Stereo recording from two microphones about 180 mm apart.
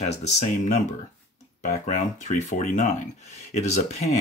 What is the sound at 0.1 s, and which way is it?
Speech, 40° left (ahead or behind).